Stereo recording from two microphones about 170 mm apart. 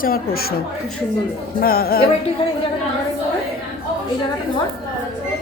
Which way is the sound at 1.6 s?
60° left (ahead or behind).